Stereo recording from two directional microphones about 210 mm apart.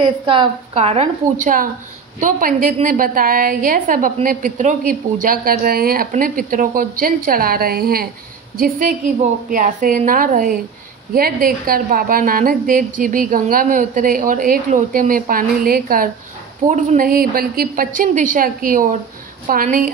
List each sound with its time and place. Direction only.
0.0 s a woman's voice: 25° right (ahead or behind); by 19.9 s 40° right (ahead or behind)